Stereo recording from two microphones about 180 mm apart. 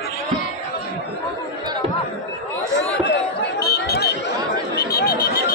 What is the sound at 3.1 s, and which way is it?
Chatter, 65° left (ahead or behind).